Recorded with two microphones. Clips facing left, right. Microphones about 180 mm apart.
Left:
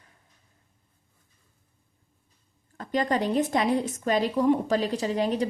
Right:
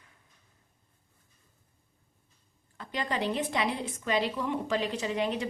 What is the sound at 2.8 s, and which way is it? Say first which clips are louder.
A woman's voice: left 7 dB; 45° left (ahead or behind).